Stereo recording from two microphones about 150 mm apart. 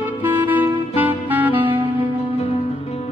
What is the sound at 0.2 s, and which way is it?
Music, 10° right (ahead or behind).